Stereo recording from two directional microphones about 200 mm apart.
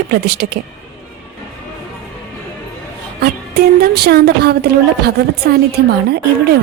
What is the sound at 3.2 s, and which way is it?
Speech, 55° right (ahead or behind).